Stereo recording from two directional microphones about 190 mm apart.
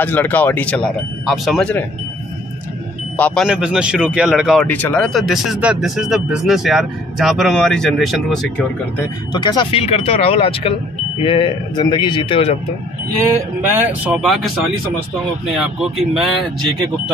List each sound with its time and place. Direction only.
0.0 s speech: 10° left (ahead or behind)
3.2 s speech: 10° left (ahead or behind)
3.4 s speech: 5° right (ahead or behind)
4.6 s speech: 10° left (ahead or behind)
9.3 s speech: 25° left (ahead or behind)
13.2 s speech: 10° right (ahead or behind)
15.4 s speech: centre (ahead or behind)